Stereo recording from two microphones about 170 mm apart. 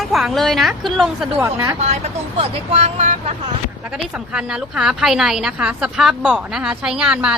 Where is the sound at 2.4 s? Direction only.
35° right (ahead or behind).